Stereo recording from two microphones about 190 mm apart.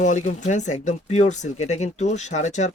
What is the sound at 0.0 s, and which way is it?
Speech, 40° left (ahead or behind).